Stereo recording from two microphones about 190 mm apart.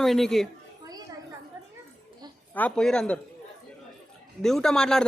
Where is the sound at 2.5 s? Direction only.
5° left (ahead or behind).